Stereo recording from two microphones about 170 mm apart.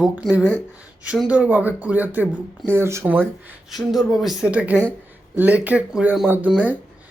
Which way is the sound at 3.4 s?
Centre (ahead or behind).